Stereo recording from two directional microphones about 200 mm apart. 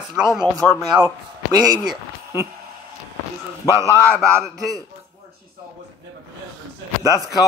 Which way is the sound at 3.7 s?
15° left (ahead or behind).